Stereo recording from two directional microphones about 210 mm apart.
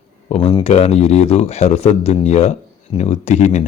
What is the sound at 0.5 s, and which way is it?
Speech, 30° left (ahead or behind).